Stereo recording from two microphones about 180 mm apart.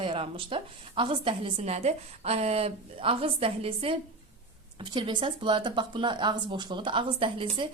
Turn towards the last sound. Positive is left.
turn(degrees=-30)  # may be behind; listen again after turning